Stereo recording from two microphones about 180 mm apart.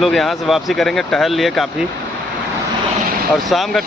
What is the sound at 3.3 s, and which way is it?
Speech, centre (ahead or behind).